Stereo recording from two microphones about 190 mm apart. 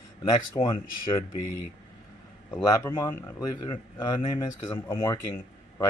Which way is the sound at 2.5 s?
15° left (ahead or behind).